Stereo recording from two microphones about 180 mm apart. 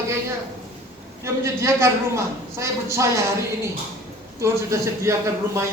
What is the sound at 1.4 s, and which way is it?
A man's voice, 15° right (ahead or behind).